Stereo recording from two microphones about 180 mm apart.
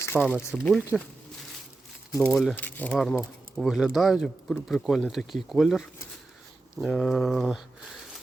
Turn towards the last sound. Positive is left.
turn(degrees=0)  # may be behind; listen again after turning